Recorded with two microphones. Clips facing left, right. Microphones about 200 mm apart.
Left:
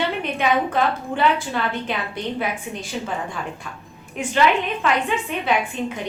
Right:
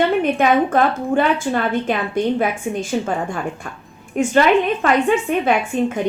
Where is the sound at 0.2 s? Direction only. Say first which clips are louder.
Right 6 dB; 45° right (ahead or behind).